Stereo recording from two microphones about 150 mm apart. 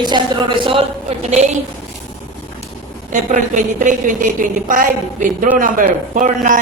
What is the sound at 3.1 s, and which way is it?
A woman's voice, 55° right (ahead or behind).